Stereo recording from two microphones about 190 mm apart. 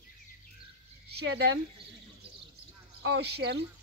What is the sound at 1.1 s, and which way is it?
Speech, 60° right (ahead or behind).